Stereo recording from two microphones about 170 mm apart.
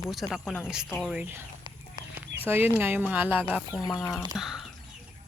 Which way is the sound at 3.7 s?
25° left (ahead or behind).